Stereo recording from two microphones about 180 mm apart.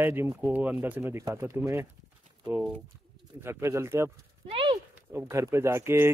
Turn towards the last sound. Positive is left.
turn(degrees=-15)  # may be behind; listen again after turning